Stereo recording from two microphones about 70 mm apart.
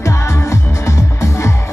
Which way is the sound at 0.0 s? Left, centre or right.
Left.